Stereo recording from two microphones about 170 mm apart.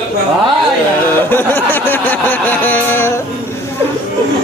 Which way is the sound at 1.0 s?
10° left (ahead or behind).